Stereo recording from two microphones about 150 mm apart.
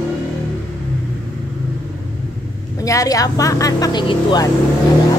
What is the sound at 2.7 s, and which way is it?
A woman's voice, 20° left (ahead or behind).